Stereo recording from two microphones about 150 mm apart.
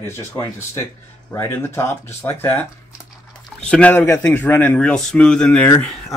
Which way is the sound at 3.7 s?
10° left (ahead or behind).